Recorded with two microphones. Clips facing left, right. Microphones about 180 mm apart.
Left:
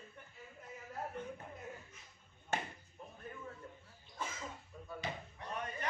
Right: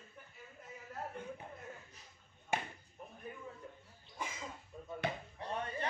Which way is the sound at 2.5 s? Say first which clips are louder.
Right 1 dB; 10° right (ahead or behind).